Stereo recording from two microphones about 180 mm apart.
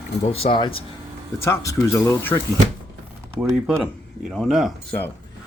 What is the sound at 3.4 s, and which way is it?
Speech, 5° right (ahead or behind).